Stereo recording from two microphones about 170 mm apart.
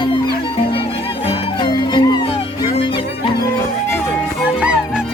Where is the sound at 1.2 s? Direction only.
30° left (ahead or behind).